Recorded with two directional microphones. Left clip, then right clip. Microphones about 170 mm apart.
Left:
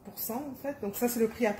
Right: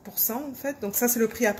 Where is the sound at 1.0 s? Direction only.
40° right (ahead or behind).